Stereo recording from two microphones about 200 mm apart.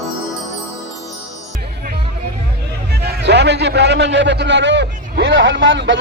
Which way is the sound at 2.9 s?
55° right (ahead or behind).